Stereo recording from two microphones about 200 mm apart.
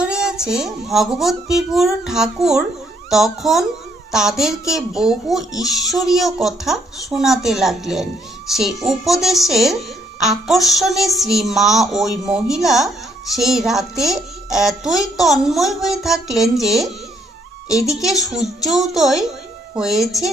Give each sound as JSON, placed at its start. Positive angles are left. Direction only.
{"t": 0.0, "sound": "a child's voice", "side_deg": -5}
{"t": 17.7, "sound": "a child's voice", "side_deg": 15}
{"t": 18.0, "sound": "a child's voice", "side_deg": 0}